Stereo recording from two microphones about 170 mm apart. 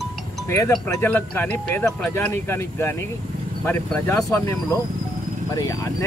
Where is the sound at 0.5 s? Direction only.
15° left (ahead or behind).